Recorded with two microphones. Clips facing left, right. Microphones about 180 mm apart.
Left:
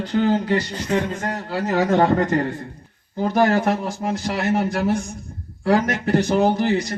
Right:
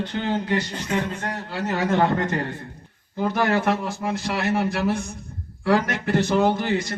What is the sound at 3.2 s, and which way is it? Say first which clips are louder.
A man's voice: left 4 dB; 35° left (ahead or behind).